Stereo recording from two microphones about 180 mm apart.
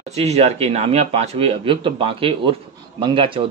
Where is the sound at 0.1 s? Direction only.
35° right (ahead or behind).